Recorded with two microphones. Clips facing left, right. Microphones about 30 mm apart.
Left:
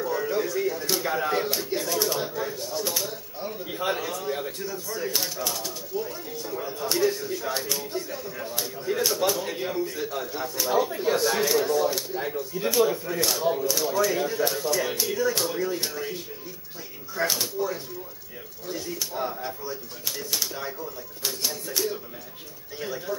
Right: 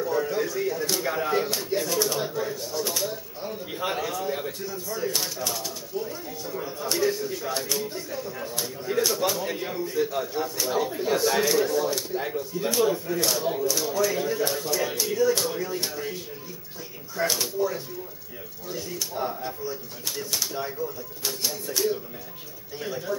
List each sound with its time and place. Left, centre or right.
0.0 s a sound: centre
0.5 s speech: centre
12.2 s speech: centre
17.2 s speech: centre